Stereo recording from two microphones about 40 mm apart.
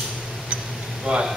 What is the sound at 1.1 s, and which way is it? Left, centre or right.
Speech, right.